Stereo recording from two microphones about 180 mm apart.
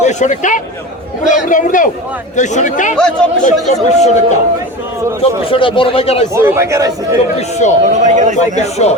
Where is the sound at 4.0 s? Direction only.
40° left (ahead or behind).